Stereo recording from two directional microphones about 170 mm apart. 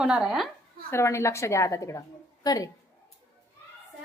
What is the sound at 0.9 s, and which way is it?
A woman's voice, 15° left (ahead or behind).